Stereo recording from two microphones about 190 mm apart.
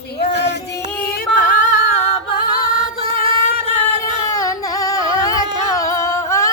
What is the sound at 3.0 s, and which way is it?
Music, 30° right (ahead or behind).